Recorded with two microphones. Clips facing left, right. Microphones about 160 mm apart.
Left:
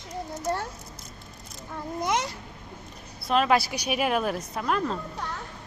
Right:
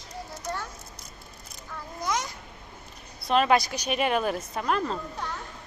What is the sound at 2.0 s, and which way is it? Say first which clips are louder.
Babbling: left 3 dB; 25° left (ahead or behind).